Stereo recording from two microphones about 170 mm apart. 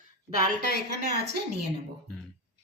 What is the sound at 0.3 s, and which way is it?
Speech, 65° left (ahead or behind).